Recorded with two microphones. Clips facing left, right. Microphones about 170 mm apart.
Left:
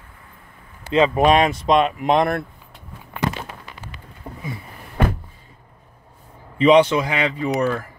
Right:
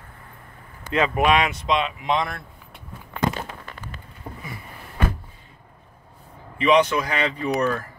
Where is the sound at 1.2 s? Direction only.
35° left (ahead or behind); by 2.4 s 55° left (ahead or behind).